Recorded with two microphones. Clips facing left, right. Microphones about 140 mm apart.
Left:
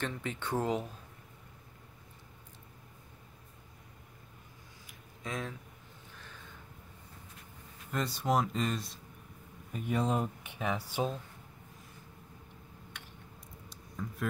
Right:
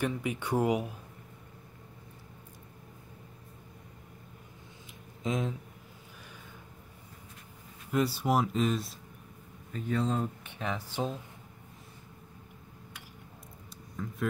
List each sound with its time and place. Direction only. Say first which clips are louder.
0.0 s speech: right 5 dB; 10° right (ahead or behind)
5.2 s speech: right 7 dB; 20° right (ahead or behind)
7.9 s speech: right 3 dB; 5° right (ahead or behind)
9.7 s speech: right 1 dB; 15° left (ahead or behind)
13.7 s a sound: right 2 dB; centre (ahead or behind)